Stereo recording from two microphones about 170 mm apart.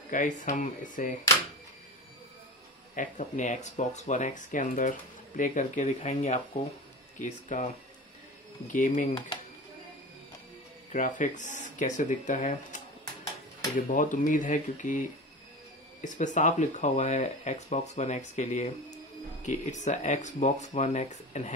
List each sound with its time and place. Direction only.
0.1 s speech: 50° left (ahead or behind)
3.0 s speech: 45° left (ahead or behind)
8.7 s speech: 50° left (ahead or behind)
10.9 s speech: 50° left (ahead or behind)